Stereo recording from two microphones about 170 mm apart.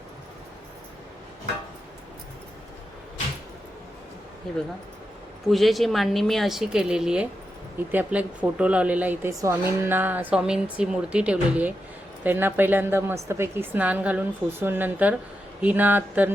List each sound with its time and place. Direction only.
5.5 s a woman's voice: centre (ahead or behind)